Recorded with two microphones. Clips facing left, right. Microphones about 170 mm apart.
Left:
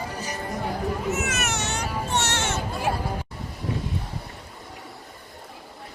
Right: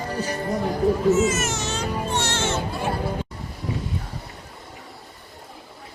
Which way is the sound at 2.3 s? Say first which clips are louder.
Right 2 dB; 65° left (ahead or behind).